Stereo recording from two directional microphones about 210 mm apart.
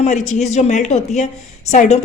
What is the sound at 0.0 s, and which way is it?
A woman's voice, 35° left (ahead or behind).